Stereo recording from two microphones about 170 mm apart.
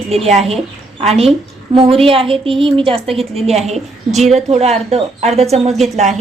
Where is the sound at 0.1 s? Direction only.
40° right (ahead or behind).